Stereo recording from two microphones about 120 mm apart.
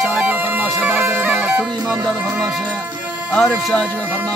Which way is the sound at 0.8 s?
20° right (ahead or behind).